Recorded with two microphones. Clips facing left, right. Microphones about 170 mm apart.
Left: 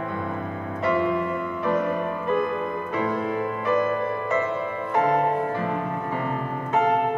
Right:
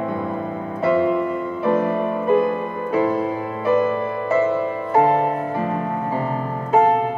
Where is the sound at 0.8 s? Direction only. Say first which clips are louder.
Right 5 dB; 30° right (ahead or behind).